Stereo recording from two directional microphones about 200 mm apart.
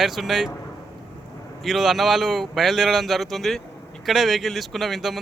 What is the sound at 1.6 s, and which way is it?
A man's voice, centre (ahead or behind).